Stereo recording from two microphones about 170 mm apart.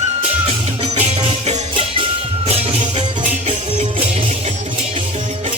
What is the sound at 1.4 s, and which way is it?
Music, 35° right (ahead or behind).